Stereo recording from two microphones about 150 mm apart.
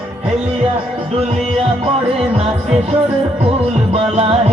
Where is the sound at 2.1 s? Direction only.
45° right (ahead or behind).